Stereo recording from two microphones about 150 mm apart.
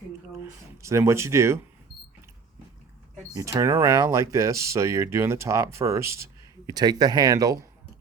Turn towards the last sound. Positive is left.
turn(degrees=-25)  # may be behind; listen again after turning